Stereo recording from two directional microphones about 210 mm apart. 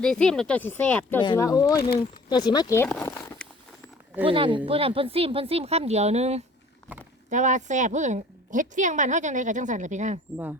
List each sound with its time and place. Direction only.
0.0 s speech: 5° left (ahead or behind)
1.2 s speech: 20° left (ahead or behind)
3.1 s a sound: 10° left (ahead or behind)
4.3 s a woman's voice: 25° right (ahead or behind)